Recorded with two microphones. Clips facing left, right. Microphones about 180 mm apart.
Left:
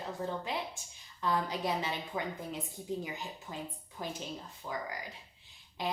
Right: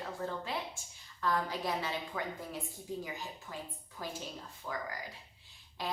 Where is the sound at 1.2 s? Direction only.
20° left (ahead or behind).